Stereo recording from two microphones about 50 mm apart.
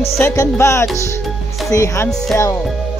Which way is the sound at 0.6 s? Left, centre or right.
Left.